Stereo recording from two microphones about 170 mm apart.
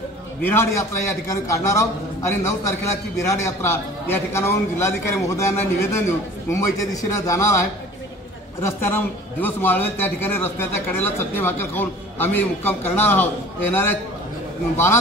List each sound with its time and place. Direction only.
0.4 s a man's voice: 15° left (ahead or behind)